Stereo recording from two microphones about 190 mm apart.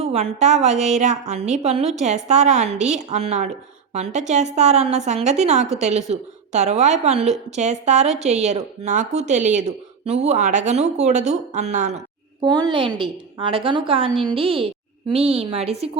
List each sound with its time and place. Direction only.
0.0 s a woman's voice: 35° right (ahead or behind)
12.4 s a woman's voice: 25° right (ahead or behind)